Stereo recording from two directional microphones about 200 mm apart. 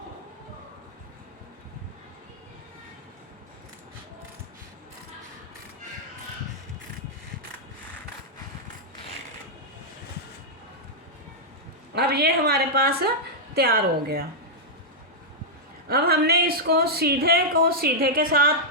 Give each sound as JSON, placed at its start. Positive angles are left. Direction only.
{"t": 11.9, "sound": "a woman's voice", "side_deg": -55}
{"t": 15.9, "sound": "a woman's voice", "side_deg": -50}